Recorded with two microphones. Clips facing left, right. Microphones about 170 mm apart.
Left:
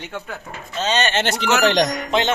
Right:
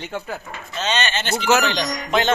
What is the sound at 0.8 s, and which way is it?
Speech, 40° left (ahead or behind).